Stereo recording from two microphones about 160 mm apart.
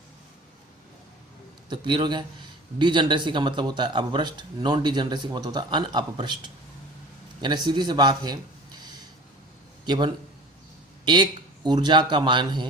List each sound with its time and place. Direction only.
1.7 s a man's voice: 30° right (ahead or behind)